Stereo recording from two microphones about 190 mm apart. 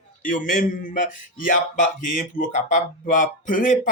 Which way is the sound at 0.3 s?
45° left (ahead or behind).